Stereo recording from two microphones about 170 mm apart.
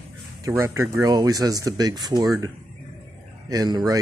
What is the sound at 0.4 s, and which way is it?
Speech, 20° right (ahead or behind).